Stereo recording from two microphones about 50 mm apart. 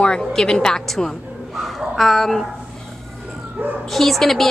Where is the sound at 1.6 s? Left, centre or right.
Centre.